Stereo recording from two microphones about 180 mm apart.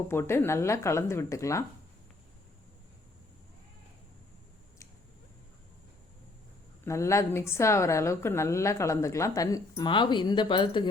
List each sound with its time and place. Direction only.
0.1 s a woman's voice: 15° left (ahead or behind)
6.8 s a woman's voice: 15° left (ahead or behind)